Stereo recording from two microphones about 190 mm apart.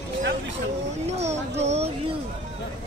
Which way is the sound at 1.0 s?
35° right (ahead or behind).